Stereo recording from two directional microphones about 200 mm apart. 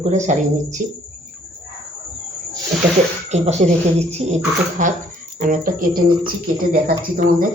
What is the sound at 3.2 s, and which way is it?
Speech, 35° right (ahead or behind).